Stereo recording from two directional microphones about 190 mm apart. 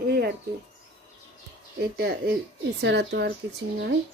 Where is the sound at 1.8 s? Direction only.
55° right (ahead or behind).